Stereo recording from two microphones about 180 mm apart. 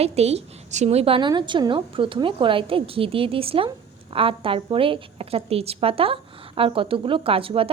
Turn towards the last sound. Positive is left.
turn(degrees=-30)  # may be behind; listen again after turning